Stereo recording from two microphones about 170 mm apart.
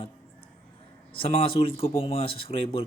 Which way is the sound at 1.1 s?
35° left (ahead or behind).